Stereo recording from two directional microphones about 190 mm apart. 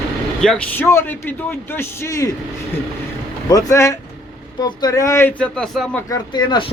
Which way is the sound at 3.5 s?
20° left (ahead or behind).